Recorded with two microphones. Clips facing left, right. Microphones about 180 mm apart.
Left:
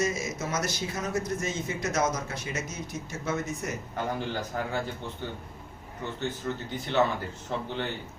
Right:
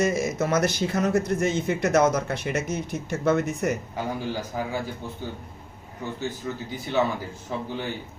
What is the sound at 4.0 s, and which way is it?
A man's voice, 10° right (ahead or behind).